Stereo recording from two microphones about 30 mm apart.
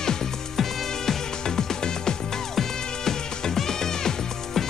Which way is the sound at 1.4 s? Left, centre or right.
Left.